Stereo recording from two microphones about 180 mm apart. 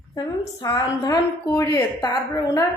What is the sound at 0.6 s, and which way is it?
A woman's voice, 20° left (ahead or behind).